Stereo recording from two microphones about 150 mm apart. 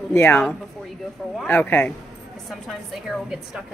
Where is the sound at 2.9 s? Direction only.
5° right (ahead or behind).